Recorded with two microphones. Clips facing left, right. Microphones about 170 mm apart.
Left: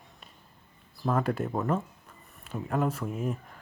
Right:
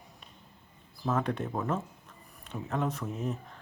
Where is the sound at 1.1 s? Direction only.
5° left (ahead or behind).